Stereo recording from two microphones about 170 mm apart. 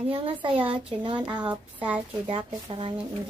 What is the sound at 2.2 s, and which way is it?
Speech, 30° right (ahead or behind).